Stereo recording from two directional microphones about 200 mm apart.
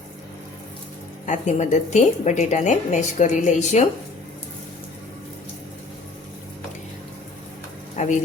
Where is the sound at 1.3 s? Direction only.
35° left (ahead or behind).